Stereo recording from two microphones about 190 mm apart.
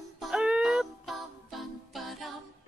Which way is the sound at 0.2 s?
5° right (ahead or behind).